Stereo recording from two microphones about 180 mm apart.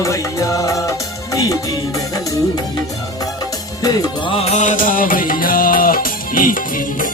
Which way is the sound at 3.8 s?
20° left (ahead or behind).